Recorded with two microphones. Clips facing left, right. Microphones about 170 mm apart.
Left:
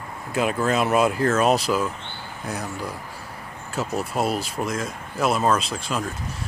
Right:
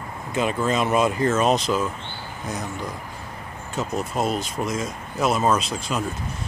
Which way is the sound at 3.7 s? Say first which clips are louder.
Even; 5° left (ahead or behind).